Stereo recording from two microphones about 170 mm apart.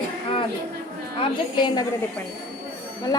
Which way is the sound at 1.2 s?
25° left (ahead or behind).